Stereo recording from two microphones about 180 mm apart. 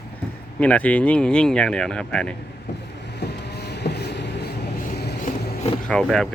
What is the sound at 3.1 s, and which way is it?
Vehicle, 70° left (ahead or behind).